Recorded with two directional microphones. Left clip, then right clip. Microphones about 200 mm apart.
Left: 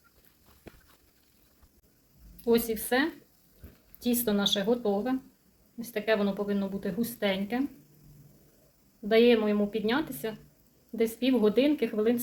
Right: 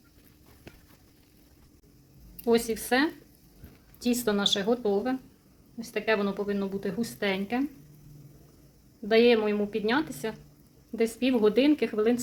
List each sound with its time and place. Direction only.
2.4 s a woman's voice: 35° right (ahead or behind)
9.0 s a woman's voice: 30° right (ahead or behind)